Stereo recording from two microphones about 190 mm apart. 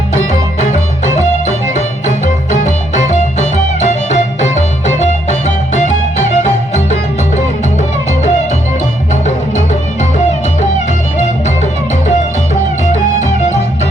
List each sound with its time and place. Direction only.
0.6 s music: 40° left (ahead or behind)